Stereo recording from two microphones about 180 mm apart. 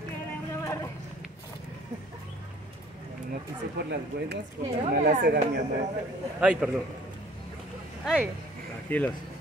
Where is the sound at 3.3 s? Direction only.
65° right (ahead or behind).